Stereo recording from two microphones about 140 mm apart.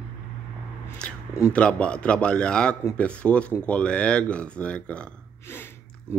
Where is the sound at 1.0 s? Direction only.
5° left (ahead or behind).